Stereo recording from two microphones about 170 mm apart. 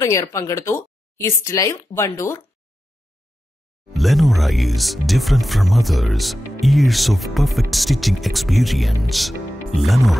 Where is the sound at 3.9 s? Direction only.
Centre (ahead or behind).